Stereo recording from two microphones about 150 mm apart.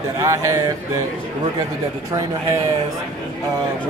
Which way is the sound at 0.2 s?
20° right (ahead or behind).